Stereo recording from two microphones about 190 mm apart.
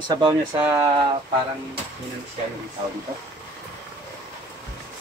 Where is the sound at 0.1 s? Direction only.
20° right (ahead or behind).